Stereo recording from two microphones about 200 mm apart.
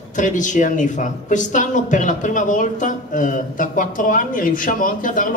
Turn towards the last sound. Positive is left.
turn(degrees=40)  # may be behind; listen again after turning